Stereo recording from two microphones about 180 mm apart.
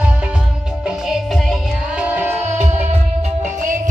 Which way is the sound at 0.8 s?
Centre (ahead or behind).